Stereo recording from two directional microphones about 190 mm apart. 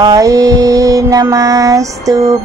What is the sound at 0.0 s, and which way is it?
Music, 20° right (ahead or behind).